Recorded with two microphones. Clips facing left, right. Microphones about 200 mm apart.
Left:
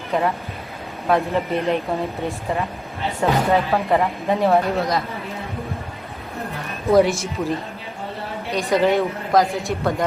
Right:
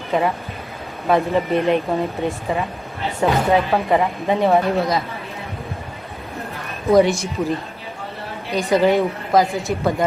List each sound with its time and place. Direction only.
0.1 s a woman's voice: centre (ahead or behind)
6.8 s a woman's voice: centre (ahead or behind)
8.5 s a woman's voice: centre (ahead or behind)